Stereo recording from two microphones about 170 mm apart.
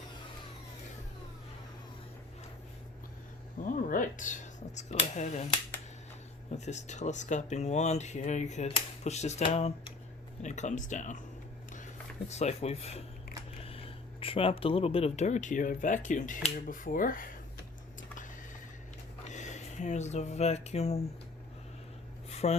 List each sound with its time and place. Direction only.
3.6 s speech: 50° left (ahead or behind)
6.5 s speech: 45° left (ahead or behind)
12.3 s speech: 40° left (ahead or behind)
19.3 s speech: 45° left (ahead or behind)
22.3 s a sound: 40° left (ahead or behind)